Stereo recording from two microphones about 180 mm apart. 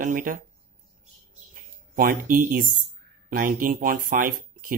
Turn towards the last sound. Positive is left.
turn(degrees=-50)  # may be behind; listen again after turning